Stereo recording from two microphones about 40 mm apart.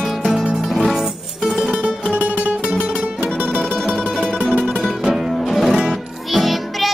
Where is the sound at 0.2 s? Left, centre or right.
Centre.